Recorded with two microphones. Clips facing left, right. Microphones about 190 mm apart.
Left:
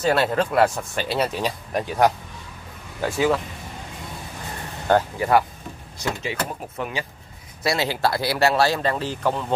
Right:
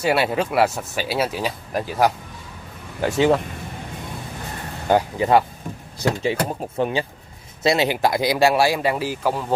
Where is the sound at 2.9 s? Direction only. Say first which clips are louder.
Right 3 dB; 25° right (ahead or behind).